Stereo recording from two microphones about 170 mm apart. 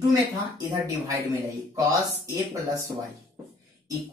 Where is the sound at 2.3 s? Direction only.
20° right (ahead or behind).